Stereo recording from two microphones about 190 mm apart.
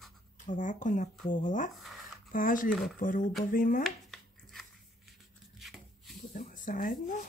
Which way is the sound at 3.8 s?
Centre (ahead or behind).